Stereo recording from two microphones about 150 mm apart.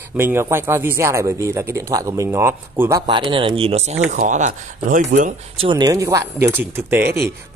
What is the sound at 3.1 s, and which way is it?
Speech, 35° right (ahead or behind).